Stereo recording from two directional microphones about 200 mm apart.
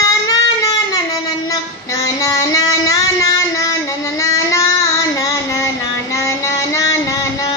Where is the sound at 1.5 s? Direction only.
15° left (ahead or behind).